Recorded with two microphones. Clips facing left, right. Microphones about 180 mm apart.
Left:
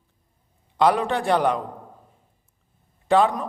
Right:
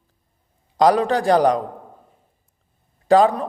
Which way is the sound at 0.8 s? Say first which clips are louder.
Right 4 dB; 40° right (ahead or behind).